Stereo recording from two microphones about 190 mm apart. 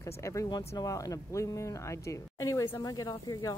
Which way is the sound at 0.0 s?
15° left (ahead or behind).